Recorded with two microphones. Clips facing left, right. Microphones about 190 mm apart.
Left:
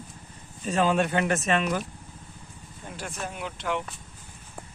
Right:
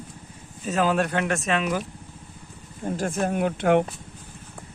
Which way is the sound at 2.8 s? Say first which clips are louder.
Right 11 dB; 45° right (ahead or behind).